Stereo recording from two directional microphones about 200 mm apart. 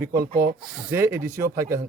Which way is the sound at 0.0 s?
15° right (ahead or behind).